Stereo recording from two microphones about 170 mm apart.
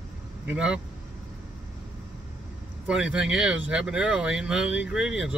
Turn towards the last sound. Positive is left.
turn(degrees=-5)  # may be behind; listen again after turning